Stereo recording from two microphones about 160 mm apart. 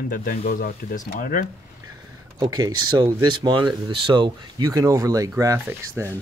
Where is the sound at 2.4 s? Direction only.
25° right (ahead or behind).